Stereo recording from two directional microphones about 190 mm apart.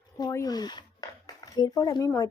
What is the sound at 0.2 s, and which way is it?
Speech, 20° left (ahead or behind).